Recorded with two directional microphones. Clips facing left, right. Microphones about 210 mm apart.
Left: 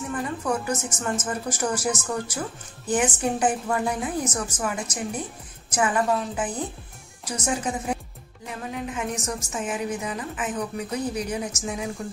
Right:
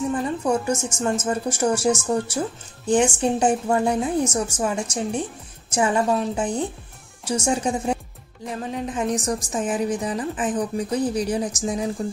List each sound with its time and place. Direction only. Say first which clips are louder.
0.1 s a woman's voice: right 5 dB; 25° right (ahead or behind)